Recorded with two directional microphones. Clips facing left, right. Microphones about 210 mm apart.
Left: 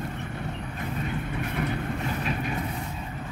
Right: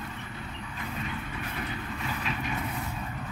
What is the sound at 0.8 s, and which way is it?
Vehicle, 45° left (ahead or behind).